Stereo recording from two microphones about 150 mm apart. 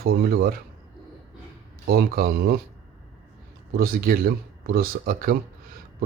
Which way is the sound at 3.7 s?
85° right.